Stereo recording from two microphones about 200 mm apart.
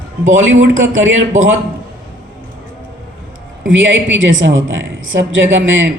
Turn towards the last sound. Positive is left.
turn(degrees=-70)  # may be behind; listen again after turning